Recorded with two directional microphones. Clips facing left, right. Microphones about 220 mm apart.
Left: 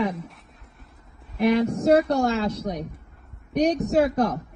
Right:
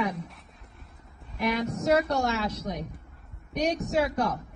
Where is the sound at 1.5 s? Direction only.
30° left (ahead or behind).